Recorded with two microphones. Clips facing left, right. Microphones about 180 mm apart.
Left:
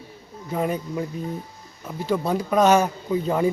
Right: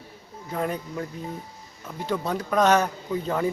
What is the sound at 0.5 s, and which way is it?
Speech, 10° left (ahead or behind).